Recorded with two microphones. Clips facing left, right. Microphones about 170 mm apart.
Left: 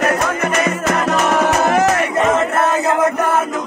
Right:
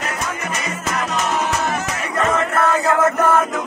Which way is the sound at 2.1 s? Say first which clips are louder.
Left 3 dB; 25° left (ahead or behind).